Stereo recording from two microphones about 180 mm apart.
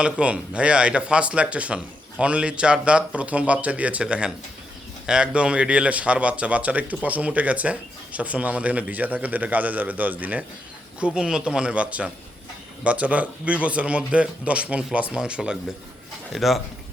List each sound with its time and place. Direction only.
0.0 s speech: 5° right (ahead or behind)